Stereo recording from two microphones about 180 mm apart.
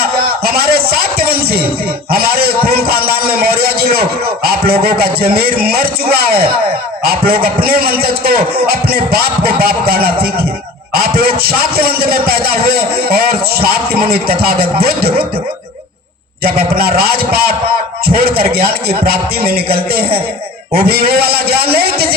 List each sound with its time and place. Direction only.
0.0 s music: 55° right (ahead or behind)
2.0 s a sound: 55° right (ahead or behind)
4.4 s a man's voice: 60° right (ahead or behind)
16.4 s a man's voice: 55° right (ahead or behind)